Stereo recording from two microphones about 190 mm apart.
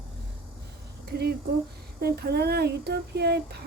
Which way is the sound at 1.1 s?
60° right (ahead or behind).